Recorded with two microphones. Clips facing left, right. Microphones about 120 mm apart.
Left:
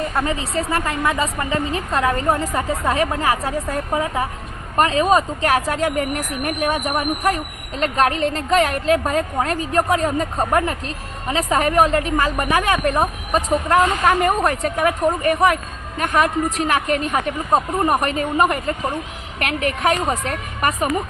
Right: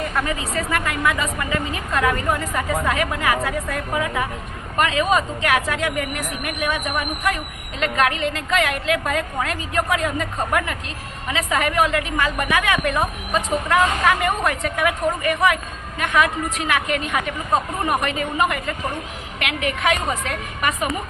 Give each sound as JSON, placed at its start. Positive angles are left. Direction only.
{"t": 0.1, "sound": "a woman's voice", "side_deg": 30}